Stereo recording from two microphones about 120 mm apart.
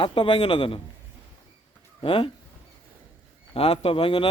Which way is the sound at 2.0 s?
50° left (ahead or behind).